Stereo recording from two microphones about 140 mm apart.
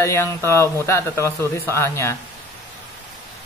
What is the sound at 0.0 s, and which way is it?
A man's voice, 20° left (ahead or behind).